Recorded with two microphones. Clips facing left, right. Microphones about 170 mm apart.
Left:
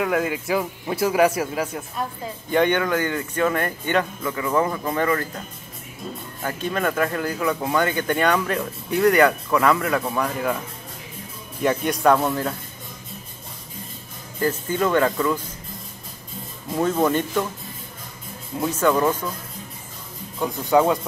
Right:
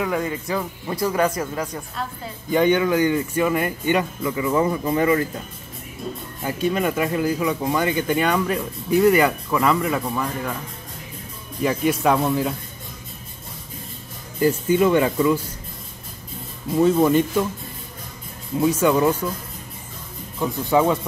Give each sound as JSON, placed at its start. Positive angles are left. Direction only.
{"t": 0.0, "sound": "speech", "side_deg": 5}
{"t": 2.5, "sound": "speech", "side_deg": -5}
{"t": 6.4, "sound": "speech", "side_deg": -10}
{"t": 11.6, "sound": "speech", "side_deg": -5}
{"t": 14.4, "sound": "speech", "side_deg": -15}
{"t": 16.7, "sound": "speech", "side_deg": -5}
{"t": 18.6, "sound": "speech", "side_deg": -10}
{"t": 20.3, "sound": "speech", "side_deg": 0}